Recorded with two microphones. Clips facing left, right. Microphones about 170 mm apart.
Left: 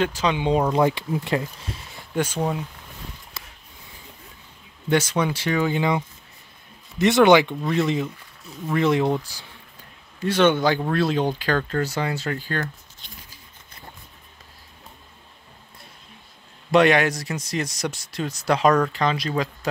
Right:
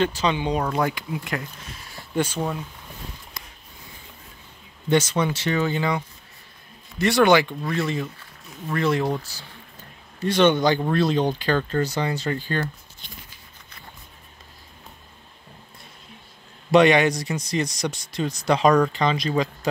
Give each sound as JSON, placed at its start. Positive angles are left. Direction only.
{"t": 0.0, "sound": "speech", "side_deg": 10}
{"t": 0.5, "sound": "speech", "side_deg": 25}
{"t": 2.1, "sound": "speech", "side_deg": 10}
{"t": 4.9, "sound": "speech", "side_deg": 10}
{"t": 10.2, "sound": "speech", "side_deg": 5}
{"t": 16.7, "sound": "speech", "side_deg": 5}